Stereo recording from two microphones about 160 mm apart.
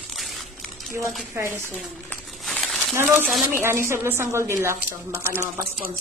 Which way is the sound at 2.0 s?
10° left (ahead or behind).